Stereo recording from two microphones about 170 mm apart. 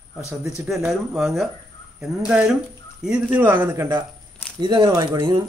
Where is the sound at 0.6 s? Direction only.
5° right (ahead or behind).